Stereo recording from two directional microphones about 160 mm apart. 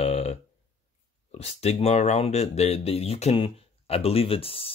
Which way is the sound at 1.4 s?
40° left (ahead or behind).